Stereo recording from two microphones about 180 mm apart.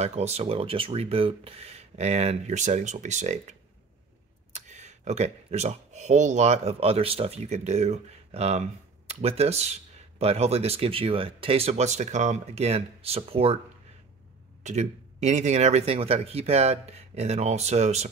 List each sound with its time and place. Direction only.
0.0 s speech: 35° right (ahead or behind)
14.6 s speech: 40° right (ahead or behind)